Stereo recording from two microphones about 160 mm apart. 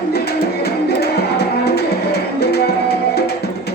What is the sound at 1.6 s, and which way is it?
Music, 90° left.